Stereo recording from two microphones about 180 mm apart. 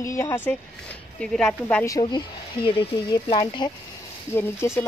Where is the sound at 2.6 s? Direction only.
60° left (ahead or behind).